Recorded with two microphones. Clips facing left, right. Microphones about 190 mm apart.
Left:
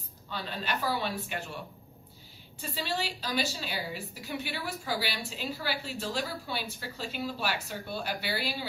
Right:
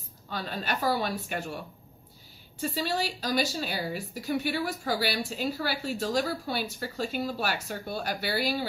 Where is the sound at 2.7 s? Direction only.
45° right (ahead or behind).